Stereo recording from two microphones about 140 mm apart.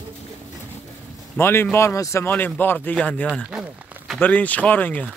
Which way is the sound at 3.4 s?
10° right (ahead or behind).